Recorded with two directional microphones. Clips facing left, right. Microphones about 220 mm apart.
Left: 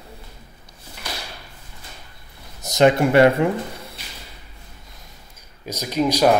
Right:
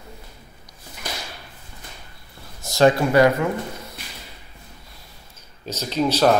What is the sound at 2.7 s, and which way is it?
Speech, 20° left (ahead or behind).